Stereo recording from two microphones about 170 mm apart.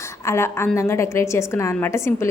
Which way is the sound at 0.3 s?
15° left (ahead or behind).